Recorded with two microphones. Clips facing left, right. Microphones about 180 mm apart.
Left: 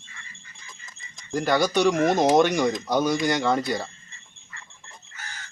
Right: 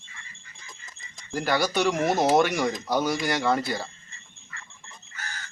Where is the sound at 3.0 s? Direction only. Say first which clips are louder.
Left 3 dB; 20° left (ahead or behind).